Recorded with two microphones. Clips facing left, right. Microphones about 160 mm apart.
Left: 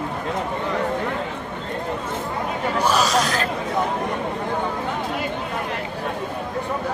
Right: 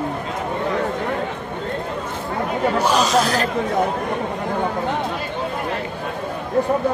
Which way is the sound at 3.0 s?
30° right (ahead or behind).